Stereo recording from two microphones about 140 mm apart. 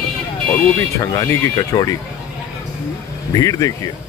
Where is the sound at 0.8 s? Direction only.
20° left (ahead or behind).